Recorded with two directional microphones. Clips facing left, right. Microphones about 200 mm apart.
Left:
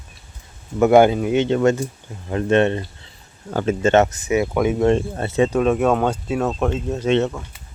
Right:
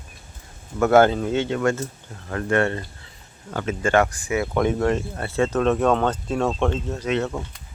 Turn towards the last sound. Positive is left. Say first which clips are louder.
# left 5 dB
turn(degrees=25)  # may be behind; listen again after turning